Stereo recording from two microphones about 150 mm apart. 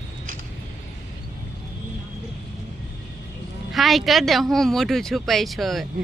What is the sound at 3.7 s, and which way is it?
Speech, centre (ahead or behind).